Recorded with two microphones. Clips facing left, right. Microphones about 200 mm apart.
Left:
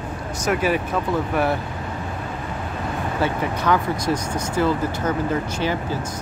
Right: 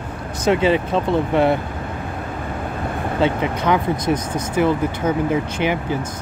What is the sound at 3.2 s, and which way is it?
Speech, 20° right (ahead or behind).